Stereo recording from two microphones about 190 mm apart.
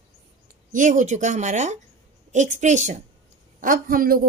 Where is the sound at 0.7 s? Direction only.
40° right (ahead or behind).